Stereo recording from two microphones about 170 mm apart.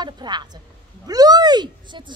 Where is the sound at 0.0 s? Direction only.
25° right (ahead or behind).